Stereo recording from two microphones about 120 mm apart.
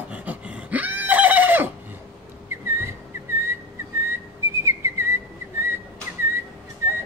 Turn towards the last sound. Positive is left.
turn(degrees=-20)  # may be behind; listen again after turning